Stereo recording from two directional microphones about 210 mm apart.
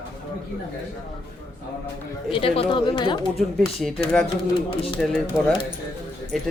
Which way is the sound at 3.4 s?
Centre (ahead or behind).